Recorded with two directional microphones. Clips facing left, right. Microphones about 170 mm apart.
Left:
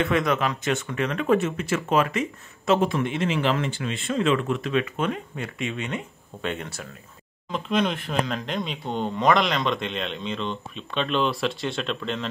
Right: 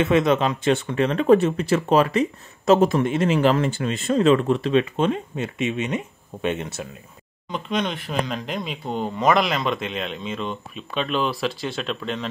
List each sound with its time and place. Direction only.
0.0 s speech: 25° right (ahead or behind)
7.4 s speech: centre (ahead or behind)